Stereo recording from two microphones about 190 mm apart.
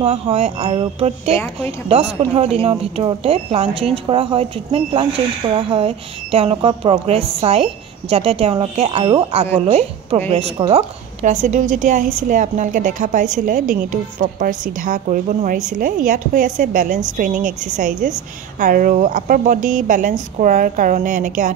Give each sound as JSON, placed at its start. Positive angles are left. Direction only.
{"t": 0.0, "sound": "a woman's voice", "side_deg": -35}